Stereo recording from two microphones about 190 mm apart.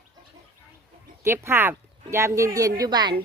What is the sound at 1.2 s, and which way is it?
A woman's voice, 10° right (ahead or behind).